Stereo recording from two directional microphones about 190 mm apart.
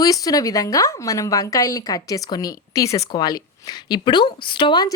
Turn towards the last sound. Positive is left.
turn(degrees=25)  # may be behind; listen again after turning